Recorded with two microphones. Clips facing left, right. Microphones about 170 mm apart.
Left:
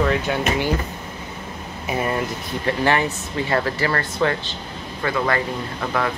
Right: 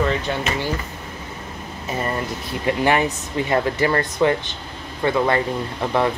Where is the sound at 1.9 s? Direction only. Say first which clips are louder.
Left 2 dB; 5° left (ahead or behind).